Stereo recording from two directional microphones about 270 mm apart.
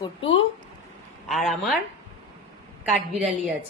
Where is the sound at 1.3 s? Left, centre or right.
Centre.